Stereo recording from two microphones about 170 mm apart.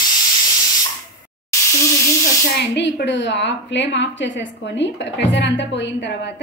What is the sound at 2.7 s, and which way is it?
A woman's voice, 90° left.